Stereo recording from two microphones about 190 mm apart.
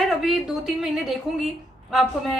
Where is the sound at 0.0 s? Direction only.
Centre (ahead or behind).